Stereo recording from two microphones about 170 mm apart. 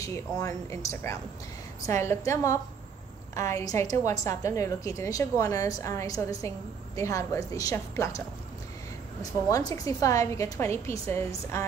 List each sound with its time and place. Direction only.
0.0 s a woman's voice: 20° left (ahead or behind)
9.2 s a woman's voice: 20° left (ahead or behind)